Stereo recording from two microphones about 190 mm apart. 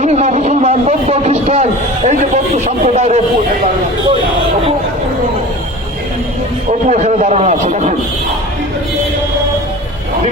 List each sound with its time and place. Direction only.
0.0 s a sound: 35° right (ahead or behind)
2.0 s a man's voice: 40° right (ahead or behind)
6.8 s a man's voice: 35° right (ahead or behind)